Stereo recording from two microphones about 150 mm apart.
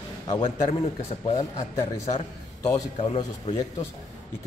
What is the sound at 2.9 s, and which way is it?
Speech, 40° left (ahead or behind).